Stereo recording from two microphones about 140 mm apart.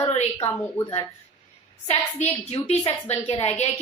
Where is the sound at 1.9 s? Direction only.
50° left (ahead or behind).